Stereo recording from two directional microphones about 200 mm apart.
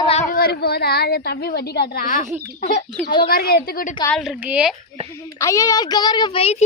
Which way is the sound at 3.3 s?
50° left (ahead or behind).